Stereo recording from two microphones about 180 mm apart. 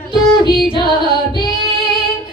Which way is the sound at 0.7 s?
25° left (ahead or behind).